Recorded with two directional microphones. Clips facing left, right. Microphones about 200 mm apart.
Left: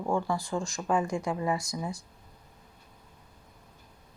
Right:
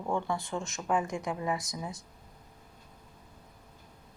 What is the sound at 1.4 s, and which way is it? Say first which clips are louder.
Speech: left 3 dB; centre (ahead or behind).